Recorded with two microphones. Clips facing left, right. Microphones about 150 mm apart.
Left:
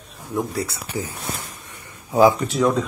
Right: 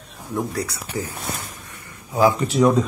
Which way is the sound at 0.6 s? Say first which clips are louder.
Even; 20° left (ahead or behind).